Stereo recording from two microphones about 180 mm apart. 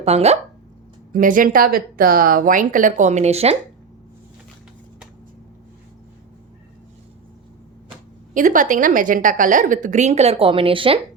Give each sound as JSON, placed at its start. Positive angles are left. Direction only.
{"t": 0.0, "sound": "speech", "side_deg": -35}
{"t": 1.1, "sound": "a woman's voice", "side_deg": -50}
{"t": 8.3, "sound": "a woman's voice", "side_deg": -45}